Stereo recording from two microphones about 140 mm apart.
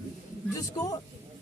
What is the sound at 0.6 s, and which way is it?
Speech, 25° left (ahead or behind).